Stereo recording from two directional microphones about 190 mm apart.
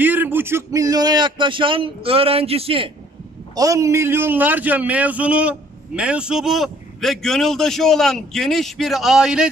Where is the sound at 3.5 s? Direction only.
20° right (ahead or behind).